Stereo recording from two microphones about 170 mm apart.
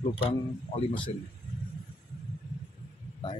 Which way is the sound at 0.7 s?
30° left (ahead or behind).